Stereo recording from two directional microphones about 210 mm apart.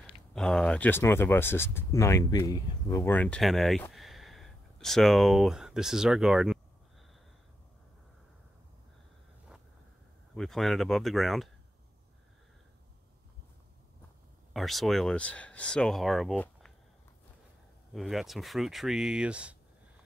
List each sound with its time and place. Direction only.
0.0 s speech: centre (ahead or behind)
10.3 s speech: centre (ahead or behind)
14.5 s speech: centre (ahead or behind)
17.9 s speech: centre (ahead or behind)